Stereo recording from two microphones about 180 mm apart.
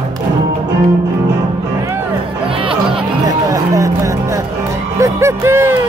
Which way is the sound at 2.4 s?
30° right (ahead or behind).